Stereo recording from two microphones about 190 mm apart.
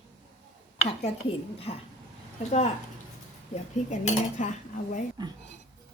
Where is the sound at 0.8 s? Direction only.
30° left (ahead or behind).